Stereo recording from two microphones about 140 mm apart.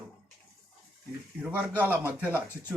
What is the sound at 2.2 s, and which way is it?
Speech, 15° left (ahead or behind).